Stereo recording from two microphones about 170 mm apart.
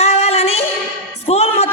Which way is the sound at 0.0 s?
40° left (ahead or behind).